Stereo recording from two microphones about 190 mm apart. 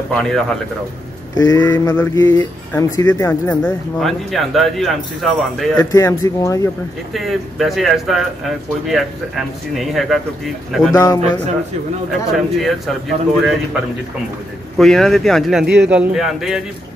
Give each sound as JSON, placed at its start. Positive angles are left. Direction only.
{"t": 0.1, "sound": "speech", "side_deg": 5}
{"t": 1.4, "sound": "speech", "side_deg": 15}
{"t": 5.9, "sound": "speech", "side_deg": 15}
{"t": 7.2, "sound": "speech", "side_deg": 0}
{"t": 10.9, "sound": "speech", "side_deg": 20}
{"t": 12.5, "sound": "speech", "side_deg": 0}
{"t": 15.6, "sound": "a man's voice", "side_deg": -60}
{"t": 15.9, "sound": "speech", "side_deg": -5}